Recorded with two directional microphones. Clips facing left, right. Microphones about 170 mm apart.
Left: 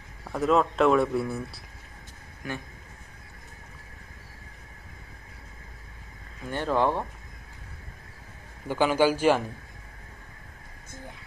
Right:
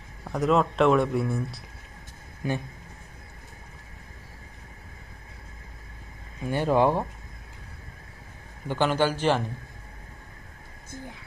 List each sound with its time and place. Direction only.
0.2 s speech: centre (ahead or behind)
2.4 s speech: 25° right (ahead or behind)
6.4 s speech: 15° right (ahead or behind)
8.6 s a man's voice: 10° left (ahead or behind)